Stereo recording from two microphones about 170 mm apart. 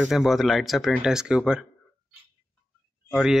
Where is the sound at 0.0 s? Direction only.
Centre (ahead or behind).